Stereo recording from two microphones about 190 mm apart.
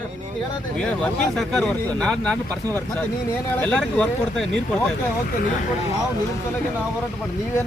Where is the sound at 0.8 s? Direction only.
5° left (ahead or behind).